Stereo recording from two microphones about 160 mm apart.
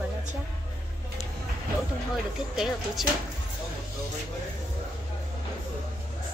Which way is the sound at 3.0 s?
Centre (ahead or behind).